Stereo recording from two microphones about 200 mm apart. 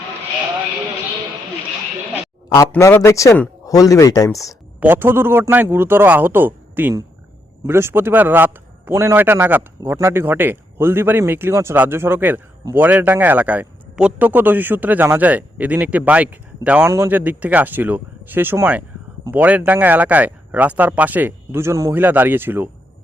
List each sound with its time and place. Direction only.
2.6 s speech: 10° left (ahead or behind)
4.8 s a man's voice: 10° right (ahead or behind)